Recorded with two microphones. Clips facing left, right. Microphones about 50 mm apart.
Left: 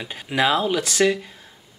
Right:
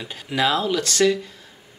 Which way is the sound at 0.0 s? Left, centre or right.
Centre.